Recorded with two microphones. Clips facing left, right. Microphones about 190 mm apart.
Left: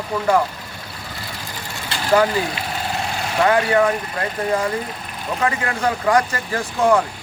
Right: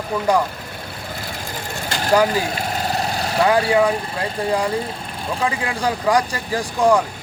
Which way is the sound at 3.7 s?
15° right (ahead or behind).